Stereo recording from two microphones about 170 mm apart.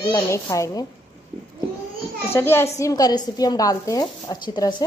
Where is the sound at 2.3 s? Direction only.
15° left (ahead or behind).